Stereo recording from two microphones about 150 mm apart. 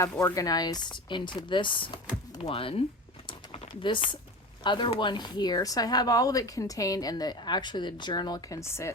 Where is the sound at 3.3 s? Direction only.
40° left (ahead or behind).